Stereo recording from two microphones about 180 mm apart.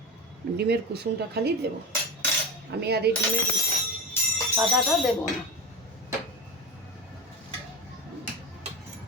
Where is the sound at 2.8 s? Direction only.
65° right (ahead or behind).